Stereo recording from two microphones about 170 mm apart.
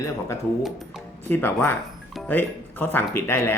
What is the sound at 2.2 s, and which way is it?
Speech, 10° left (ahead or behind).